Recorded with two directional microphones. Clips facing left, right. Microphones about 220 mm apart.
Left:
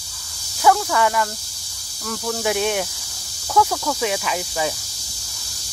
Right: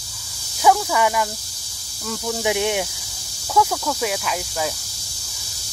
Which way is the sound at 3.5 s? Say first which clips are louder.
Left 1 dB; centre (ahead or behind).